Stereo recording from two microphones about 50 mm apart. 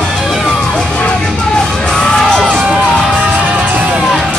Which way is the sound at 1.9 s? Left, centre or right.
Centre.